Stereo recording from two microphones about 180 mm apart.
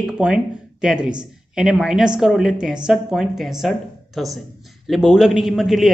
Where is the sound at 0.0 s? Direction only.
5° right (ahead or behind).